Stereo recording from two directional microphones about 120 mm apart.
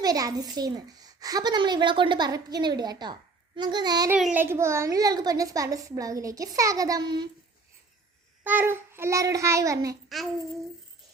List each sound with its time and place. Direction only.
0.0 s a child's voice: 30° right (ahead or behind)
4.4 s a woman's voice: 20° right (ahead or behind); by 7.3 s 35° right (ahead or behind)
8.4 s a woman's voice: 15° right (ahead or behind)
10.1 s a sound: centre (ahead or behind)